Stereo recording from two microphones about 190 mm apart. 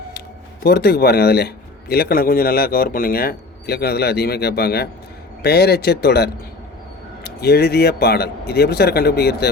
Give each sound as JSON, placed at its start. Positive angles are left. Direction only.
{"t": 0.6, "sound": "a man's voice", "side_deg": 55}